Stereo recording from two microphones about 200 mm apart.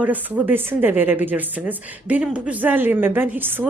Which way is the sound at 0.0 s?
10° right (ahead or behind).